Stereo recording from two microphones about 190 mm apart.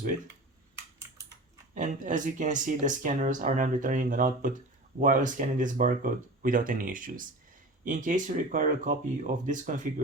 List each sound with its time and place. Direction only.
1.7 s speech: 40° right (ahead or behind)